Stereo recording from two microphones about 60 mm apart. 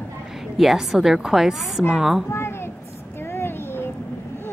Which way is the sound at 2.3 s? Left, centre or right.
Left.